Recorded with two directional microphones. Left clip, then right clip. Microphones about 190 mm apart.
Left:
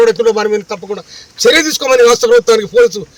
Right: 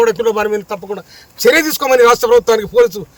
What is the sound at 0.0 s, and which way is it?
Speech, 30° right (ahead or behind).